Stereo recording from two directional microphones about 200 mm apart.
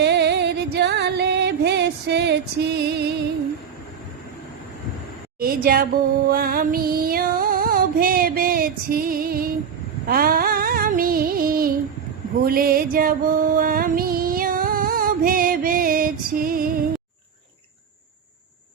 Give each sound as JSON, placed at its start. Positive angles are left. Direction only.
{"t": 0.0, "sound": "music", "side_deg": -55}
{"t": 5.4, "sound": "music", "side_deg": -45}